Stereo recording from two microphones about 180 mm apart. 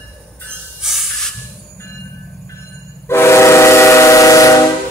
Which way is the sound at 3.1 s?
15° left (ahead or behind).